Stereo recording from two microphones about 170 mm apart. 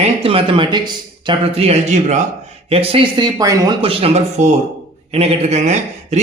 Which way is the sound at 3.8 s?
35° right (ahead or behind).